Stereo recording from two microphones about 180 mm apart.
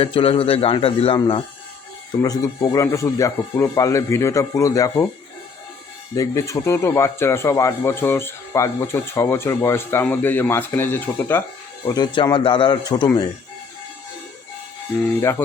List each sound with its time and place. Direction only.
0.0 s a man's voice: 30° left (ahead or behind)
6.1 s speech: 15° left (ahead or behind)
11.9 s speech: 25° left (ahead or behind)